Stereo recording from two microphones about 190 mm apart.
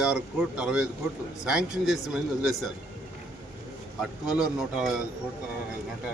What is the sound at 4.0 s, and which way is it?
Speech, 5° right (ahead or behind).